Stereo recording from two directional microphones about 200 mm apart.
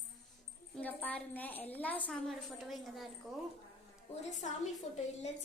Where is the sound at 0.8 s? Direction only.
10° left (ahead or behind).